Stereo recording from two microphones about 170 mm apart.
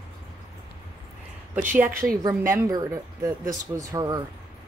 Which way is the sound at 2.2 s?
20° right (ahead or behind).